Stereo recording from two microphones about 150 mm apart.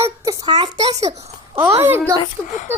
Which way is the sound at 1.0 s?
45° right (ahead or behind).